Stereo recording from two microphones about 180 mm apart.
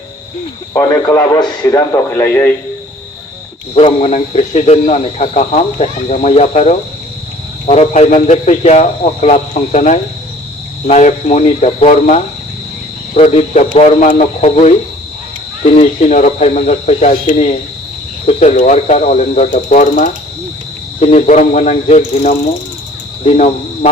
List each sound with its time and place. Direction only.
0.7 s a man's voice: 20° left (ahead or behind)
3.8 s speech: 35° left (ahead or behind)
19.5 s mechanisms: 45° left (ahead or behind)
21.0 s speech: 40° left (ahead or behind)
23.2 s cricket: 35° left (ahead or behind)